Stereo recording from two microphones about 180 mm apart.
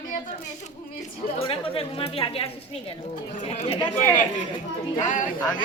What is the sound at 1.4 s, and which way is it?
Speech, 30° left (ahead or behind).